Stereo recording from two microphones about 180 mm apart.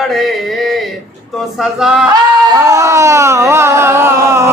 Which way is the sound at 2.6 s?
15° right (ahead or behind).